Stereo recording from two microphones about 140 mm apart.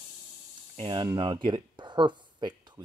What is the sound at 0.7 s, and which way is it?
Speech, 35° right (ahead or behind).